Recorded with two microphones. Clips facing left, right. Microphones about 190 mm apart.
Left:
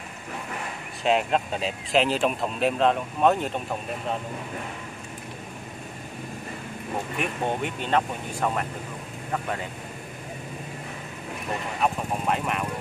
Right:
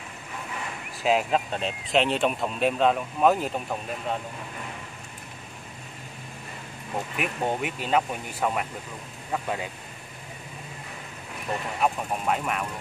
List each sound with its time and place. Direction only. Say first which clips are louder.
1.0 s speech: even; centre (ahead or behind)
7.2 s speech: even; 5° right (ahead or behind)
11.8 s speech: even; centre (ahead or behind)